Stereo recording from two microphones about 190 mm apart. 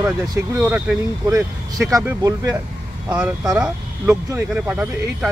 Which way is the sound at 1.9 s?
20° right (ahead or behind).